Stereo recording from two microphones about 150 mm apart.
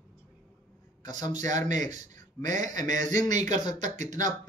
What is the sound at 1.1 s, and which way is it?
A man's voice, 55° right (ahead or behind).